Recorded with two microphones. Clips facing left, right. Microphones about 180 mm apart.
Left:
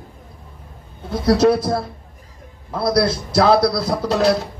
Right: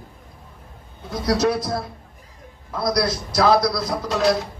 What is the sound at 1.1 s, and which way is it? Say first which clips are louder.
A man's voice: left 6 dB; 30° left (ahead or behind).